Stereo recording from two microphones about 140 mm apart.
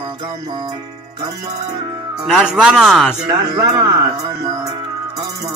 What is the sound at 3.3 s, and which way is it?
Speech, 25° right (ahead or behind).